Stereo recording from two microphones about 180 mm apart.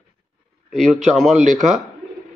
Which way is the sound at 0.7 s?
Centre (ahead or behind).